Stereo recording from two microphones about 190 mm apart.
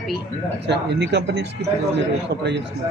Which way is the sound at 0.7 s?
65° right (ahead or behind).